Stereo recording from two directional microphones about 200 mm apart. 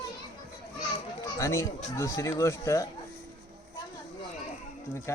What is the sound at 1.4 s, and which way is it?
A man's voice, 15° left (ahead or behind).